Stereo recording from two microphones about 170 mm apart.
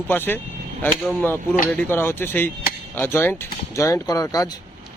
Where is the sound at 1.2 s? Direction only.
10° left (ahead or behind).